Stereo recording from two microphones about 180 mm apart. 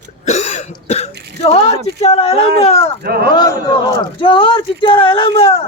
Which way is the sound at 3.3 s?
20° left (ahead or behind).